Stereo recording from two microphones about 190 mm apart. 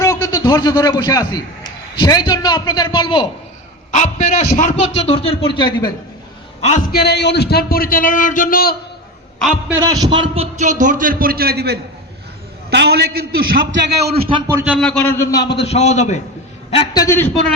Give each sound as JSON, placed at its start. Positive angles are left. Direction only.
{"t": 0.0, "sound": "a man's voice", "side_deg": 15}
{"t": 3.9, "sound": "a man's voice", "side_deg": 40}
{"t": 6.9, "sound": "a man's voice", "side_deg": 60}
{"t": 9.8, "sound": "a man's voice", "side_deg": -20}
{"t": 14.2, "sound": "a man's voice", "side_deg": -30}
{"t": 14.5, "sound": "a man's voice", "side_deg": -10}
{"t": 14.8, "sound": "a man's voice", "side_deg": 10}
{"t": 15.5, "sound": "a man's voice", "side_deg": 35}
{"t": 16.7, "sound": "a man's voice", "side_deg": 20}